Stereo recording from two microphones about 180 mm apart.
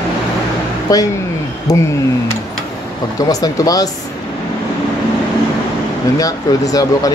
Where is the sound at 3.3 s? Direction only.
20° left (ahead or behind).